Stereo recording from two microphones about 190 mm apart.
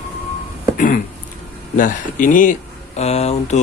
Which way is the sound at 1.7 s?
45° left (ahead or behind).